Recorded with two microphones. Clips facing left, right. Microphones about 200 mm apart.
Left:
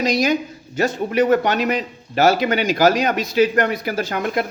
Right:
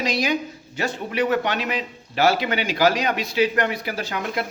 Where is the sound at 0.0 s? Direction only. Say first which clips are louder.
Left 5 dB; 40° left (ahead or behind).